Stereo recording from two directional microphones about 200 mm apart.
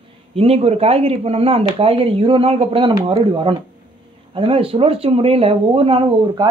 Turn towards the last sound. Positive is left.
turn(degrees=-25)  # may be behind; listen again after turning